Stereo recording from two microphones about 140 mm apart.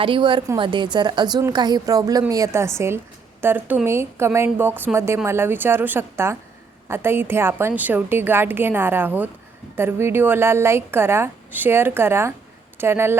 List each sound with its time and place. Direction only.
0.0 s a woman's voice: 35° right (ahead or behind); by 13.1 s 15° right (ahead or behind)